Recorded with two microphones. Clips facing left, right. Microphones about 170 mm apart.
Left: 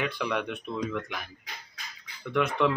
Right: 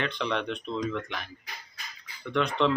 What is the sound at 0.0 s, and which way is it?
Speech, 10° left (ahead or behind).